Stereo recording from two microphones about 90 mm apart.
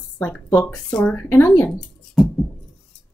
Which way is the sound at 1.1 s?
25° left (ahead or behind).